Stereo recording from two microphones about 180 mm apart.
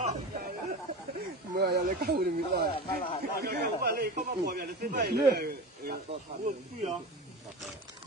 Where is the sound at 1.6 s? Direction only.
60° right (ahead or behind).